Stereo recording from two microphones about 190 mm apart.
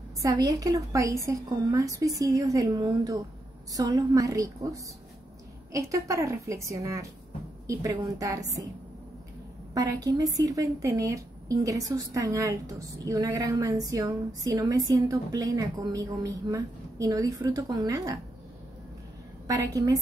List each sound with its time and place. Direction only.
0.2 s a woman's voice: 20° right (ahead or behind)
9.8 s a woman's voice: 20° right (ahead or behind)
19.4 s a woman's voice: 20° right (ahead or behind)